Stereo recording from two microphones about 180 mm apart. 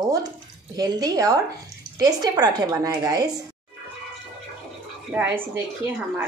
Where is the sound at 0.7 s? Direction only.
20° right (ahead or behind).